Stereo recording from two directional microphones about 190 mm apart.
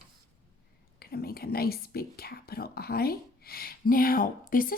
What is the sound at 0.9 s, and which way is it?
A woman's voice, 55° left (ahead or behind).